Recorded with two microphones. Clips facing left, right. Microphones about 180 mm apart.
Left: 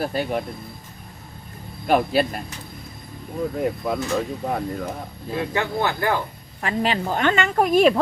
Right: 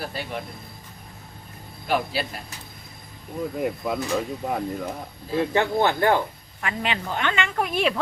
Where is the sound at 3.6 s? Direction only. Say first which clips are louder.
Left 1 dB; centre (ahead or behind).